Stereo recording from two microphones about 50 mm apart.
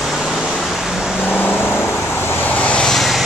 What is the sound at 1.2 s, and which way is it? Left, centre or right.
Vehicle, left.